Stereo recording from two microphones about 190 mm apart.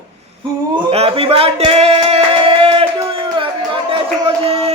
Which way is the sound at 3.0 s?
30° right (ahead or behind).